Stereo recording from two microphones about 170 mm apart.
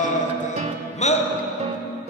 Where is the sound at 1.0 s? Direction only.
40° left (ahead or behind).